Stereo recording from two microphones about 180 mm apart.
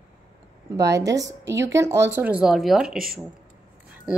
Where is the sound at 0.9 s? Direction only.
20° right (ahead or behind); by 3.0 s centre (ahead or behind).